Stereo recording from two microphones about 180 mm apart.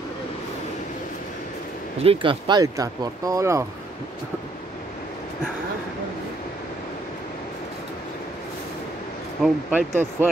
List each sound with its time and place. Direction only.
2.0 s speech: 25° right (ahead or behind)
9.4 s speech: 10° right (ahead or behind)